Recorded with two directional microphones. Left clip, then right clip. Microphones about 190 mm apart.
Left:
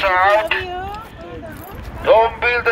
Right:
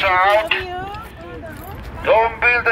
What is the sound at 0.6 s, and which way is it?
Speech, 20° right (ahead or behind).